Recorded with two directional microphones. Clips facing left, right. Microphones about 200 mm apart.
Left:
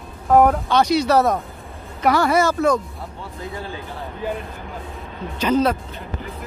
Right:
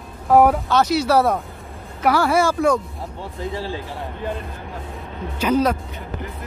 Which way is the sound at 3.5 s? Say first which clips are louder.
Right 4 dB; 30° right (ahead or behind).